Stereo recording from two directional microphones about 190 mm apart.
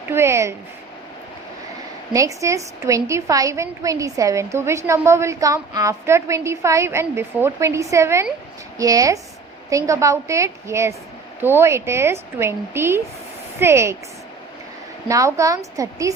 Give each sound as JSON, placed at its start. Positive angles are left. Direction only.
{"t": 0.1, "sound": "a woman's voice", "side_deg": -15}
{"t": 2.1, "sound": "a woman's voice", "side_deg": -15}
{"t": 15.0, "sound": "a woman's voice", "side_deg": -15}